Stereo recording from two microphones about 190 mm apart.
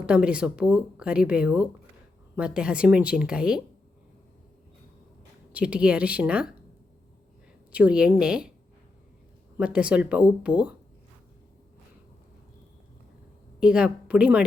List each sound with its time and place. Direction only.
0.0 s speech: 5° right (ahead or behind)
5.5 s speech: 5° right (ahead or behind)
7.7 s speech: 5° right (ahead or behind)
9.6 s speech: 5° right (ahead or behind)
13.6 s speech: 5° right (ahead or behind)